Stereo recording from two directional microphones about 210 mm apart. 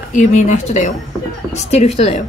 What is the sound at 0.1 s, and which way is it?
A woman's voice, 35° left (ahead or behind).